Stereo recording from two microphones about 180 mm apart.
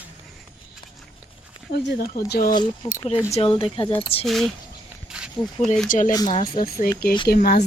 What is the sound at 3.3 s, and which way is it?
Speech, 35° left (ahead or behind).